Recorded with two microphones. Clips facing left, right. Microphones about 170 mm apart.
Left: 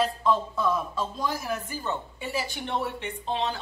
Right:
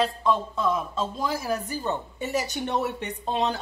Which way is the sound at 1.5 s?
40° right (ahead or behind).